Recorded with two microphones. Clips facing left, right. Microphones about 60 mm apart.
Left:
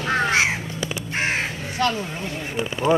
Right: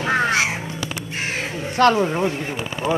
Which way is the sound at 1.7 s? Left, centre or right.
Right.